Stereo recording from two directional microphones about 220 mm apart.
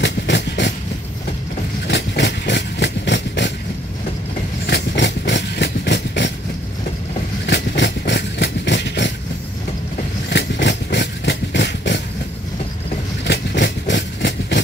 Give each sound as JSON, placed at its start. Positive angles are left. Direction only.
{"t": 0.0, "sound": "vehicle", "side_deg": 55}
{"t": 1.9, "sound": "engine", "side_deg": 55}
{"t": 4.6, "sound": "vehicle", "side_deg": 50}
{"t": 7.4, "sound": "vehicle", "side_deg": 55}
{"t": 10.3, "sound": "engine", "side_deg": 55}
{"t": 13.2, "sound": "engine", "side_deg": 55}